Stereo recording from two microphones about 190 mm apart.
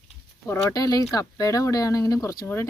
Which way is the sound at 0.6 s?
20° left (ahead or behind).